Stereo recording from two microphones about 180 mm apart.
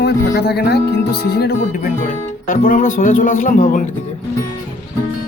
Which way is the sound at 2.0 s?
50° left (ahead or behind).